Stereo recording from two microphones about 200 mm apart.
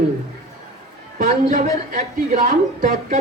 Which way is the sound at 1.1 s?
40° right (ahead or behind).